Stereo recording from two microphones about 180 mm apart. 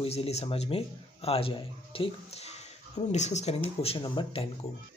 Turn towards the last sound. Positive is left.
turn(degrees=30)  # may be behind; listen again after turning